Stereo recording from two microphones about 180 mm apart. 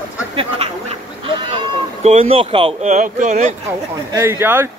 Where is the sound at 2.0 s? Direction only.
35° right (ahead or behind).